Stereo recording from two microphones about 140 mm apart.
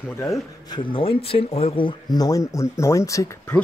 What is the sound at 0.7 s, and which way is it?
Speech, 40° left (ahead or behind).